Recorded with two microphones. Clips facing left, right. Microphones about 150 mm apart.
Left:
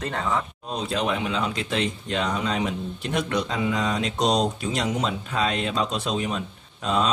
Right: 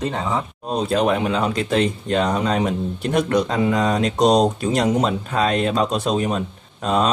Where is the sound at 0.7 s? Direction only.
45° right (ahead or behind).